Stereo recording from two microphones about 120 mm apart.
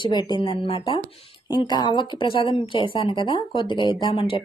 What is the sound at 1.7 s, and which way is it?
Speech, 35° left (ahead or behind).